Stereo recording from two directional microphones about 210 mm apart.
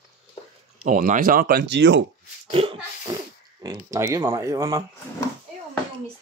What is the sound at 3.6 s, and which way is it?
Speech, 15° right (ahead or behind).